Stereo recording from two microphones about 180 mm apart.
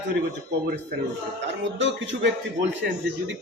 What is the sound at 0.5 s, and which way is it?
Speech, 70° right (ahead or behind).